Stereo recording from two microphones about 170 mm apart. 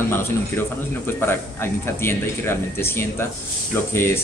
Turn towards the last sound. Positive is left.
turn(degrees=15)  # may be behind; listen again after turning